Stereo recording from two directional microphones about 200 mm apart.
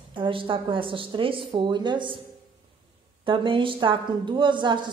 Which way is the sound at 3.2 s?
25° right (ahead or behind).